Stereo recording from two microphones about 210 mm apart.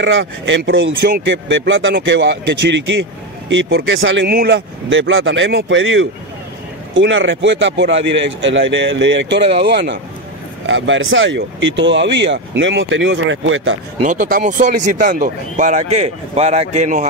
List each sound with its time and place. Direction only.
0.0 s speech: 60° right (ahead or behind)
10.7 s speech: 65° right (ahead or behind)
14.0 s speech: 40° right (ahead or behind)